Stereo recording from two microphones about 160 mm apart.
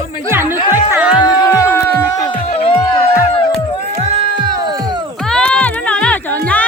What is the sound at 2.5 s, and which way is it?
Music, 35° left (ahead or behind).